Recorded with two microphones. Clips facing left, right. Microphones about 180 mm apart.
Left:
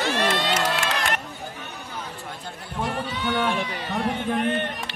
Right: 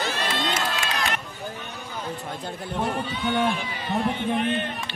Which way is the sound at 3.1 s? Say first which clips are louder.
Even; 80° left.